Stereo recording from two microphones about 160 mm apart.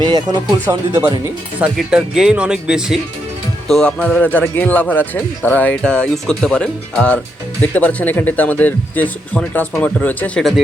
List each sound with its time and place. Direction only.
0.0 s speech: 25° right (ahead or behind)
1.5 s a man's voice: 5° right (ahead or behind)